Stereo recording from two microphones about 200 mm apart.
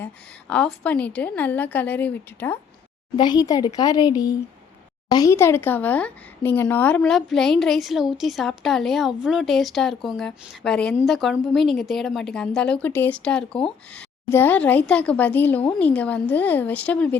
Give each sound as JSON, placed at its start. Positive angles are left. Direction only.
{"t": 0.0, "sound": "a woman's voice", "side_deg": 5}
{"t": 3.2, "sound": "a woman's voice", "side_deg": 20}